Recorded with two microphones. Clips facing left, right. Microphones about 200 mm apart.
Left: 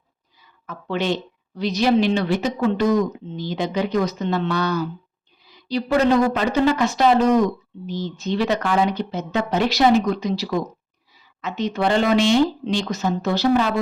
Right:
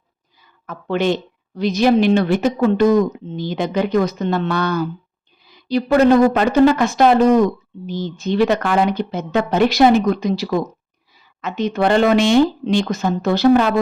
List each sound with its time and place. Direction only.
0.7 s speech: 50° right (ahead or behind)